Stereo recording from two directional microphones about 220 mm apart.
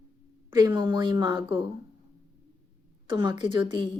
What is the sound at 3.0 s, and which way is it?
Speech, 20° right (ahead or behind).